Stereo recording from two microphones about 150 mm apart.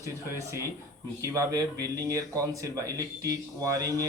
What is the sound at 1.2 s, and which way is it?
Speech, 20° right (ahead or behind).